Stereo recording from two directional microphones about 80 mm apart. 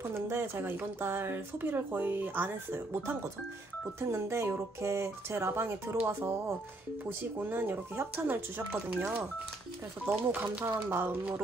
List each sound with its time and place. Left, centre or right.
0.1 s speech: right
10.0 s speech: right